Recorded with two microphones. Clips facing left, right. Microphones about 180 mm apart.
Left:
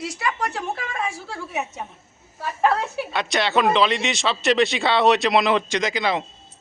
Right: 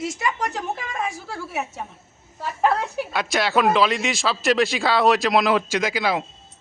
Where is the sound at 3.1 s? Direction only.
Centre (ahead or behind).